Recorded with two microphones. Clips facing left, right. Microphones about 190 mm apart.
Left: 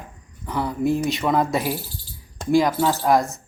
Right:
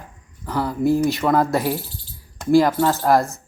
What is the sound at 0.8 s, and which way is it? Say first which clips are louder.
Speech: right 4 dB; 20° left (ahead or behind).